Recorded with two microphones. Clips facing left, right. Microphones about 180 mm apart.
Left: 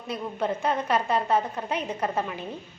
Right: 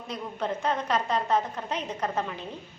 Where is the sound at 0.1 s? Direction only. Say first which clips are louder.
Left 3 dB; 10° left (ahead or behind).